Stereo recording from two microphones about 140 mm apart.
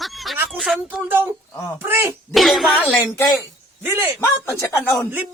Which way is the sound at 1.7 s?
15° right (ahead or behind).